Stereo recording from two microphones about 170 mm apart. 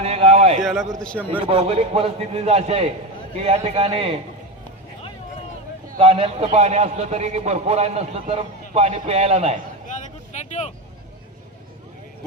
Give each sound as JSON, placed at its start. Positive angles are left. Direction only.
{"t": 0.0, "sound": "a sound", "side_deg": -35}
{"t": 0.6, "sound": "a man's voice", "side_deg": 0}
{"t": 1.3, "sound": "a man's voice", "side_deg": -30}
{"t": 6.0, "sound": "a man's voice", "side_deg": -35}
{"t": 10.3, "sound": "vehicle", "side_deg": 45}